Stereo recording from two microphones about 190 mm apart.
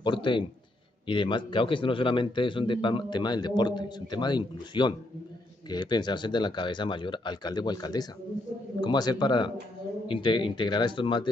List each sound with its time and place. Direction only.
0.0 s a man's voice: 25° left (ahead or behind)